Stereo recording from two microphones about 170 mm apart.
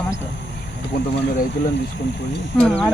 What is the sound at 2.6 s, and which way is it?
Speech, 5° left (ahead or behind).